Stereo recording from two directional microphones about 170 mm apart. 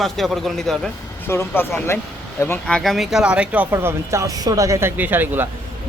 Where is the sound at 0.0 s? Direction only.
Centre (ahead or behind).